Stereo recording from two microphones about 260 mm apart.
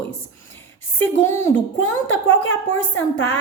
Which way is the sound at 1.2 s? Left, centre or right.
Centre.